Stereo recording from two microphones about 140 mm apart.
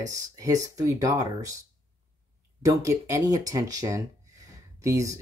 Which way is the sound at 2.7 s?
20° right (ahead or behind).